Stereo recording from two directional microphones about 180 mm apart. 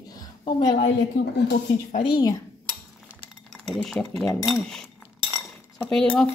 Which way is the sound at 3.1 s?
Centre (ahead or behind).